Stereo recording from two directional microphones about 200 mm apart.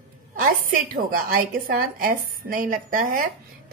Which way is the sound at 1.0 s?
45° right (ahead or behind).